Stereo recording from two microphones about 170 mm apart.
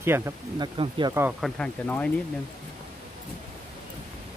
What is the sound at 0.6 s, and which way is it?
Speech, 25° right (ahead or behind).